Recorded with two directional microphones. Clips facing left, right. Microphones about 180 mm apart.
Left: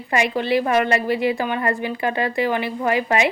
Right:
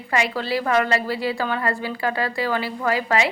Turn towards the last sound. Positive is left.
turn(degrees=20)  # may be behind; listen again after turning